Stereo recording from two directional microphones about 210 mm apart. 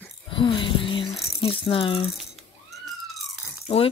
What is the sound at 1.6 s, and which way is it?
Speech, 25° left (ahead or behind).